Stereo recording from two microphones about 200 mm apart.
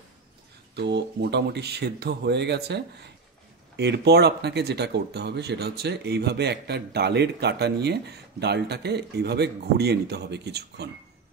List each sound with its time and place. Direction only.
0.7 s speech: 55° right (ahead or behind)